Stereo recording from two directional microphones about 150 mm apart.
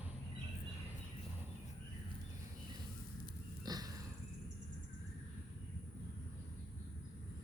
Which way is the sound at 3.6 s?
25° right (ahead or behind).